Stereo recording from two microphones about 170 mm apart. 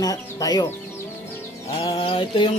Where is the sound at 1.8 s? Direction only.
30° left (ahead or behind).